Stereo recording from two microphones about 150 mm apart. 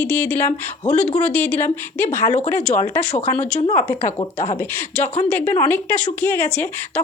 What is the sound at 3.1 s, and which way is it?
Speech, 45° left (ahead or behind).